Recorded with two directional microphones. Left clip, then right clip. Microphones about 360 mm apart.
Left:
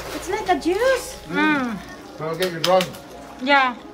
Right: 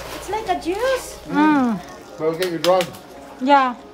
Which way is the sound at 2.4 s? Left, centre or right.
Right.